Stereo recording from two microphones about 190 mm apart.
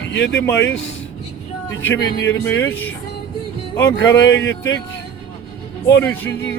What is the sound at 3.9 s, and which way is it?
Speech, 75° left (ahead or behind).